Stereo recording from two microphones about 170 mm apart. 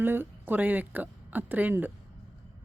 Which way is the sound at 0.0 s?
10° right (ahead or behind).